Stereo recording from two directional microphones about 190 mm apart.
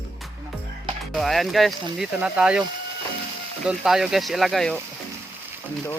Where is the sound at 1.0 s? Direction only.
Centre (ahead or behind).